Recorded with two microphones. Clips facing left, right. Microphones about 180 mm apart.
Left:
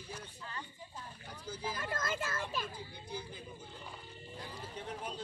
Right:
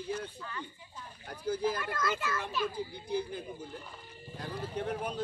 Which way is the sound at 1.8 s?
45° left (ahead or behind).